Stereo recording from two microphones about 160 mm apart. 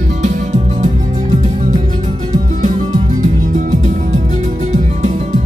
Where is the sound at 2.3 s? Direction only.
50° right (ahead or behind).